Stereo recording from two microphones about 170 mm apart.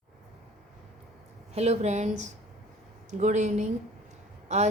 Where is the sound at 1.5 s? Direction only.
40° right (ahead or behind).